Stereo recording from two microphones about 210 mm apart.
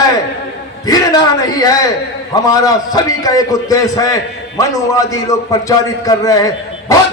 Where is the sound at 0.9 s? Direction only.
20° left (ahead or behind).